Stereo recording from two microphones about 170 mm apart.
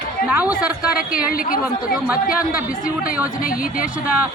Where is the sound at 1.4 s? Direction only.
55° left (ahead or behind).